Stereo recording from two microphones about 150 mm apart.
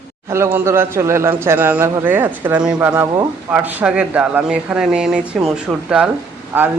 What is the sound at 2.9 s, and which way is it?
Speech, 20° right (ahead or behind).